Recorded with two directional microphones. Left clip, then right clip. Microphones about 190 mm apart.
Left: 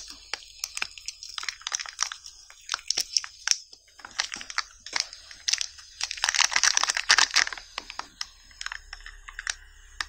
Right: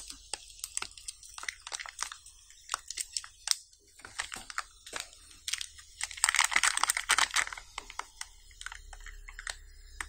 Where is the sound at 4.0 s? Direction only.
10° left (ahead or behind).